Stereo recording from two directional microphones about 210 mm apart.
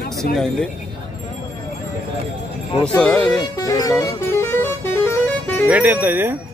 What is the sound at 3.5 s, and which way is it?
Speech, 15° left (ahead or behind).